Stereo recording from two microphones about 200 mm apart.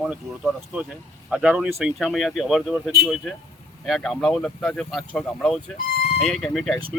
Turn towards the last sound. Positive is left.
turn(degrees=0)  # may be behind; listen again after turning